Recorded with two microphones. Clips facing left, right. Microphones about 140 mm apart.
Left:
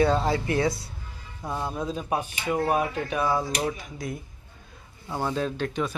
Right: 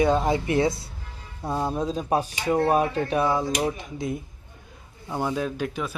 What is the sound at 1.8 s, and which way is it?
Speech, 35° right (ahead or behind).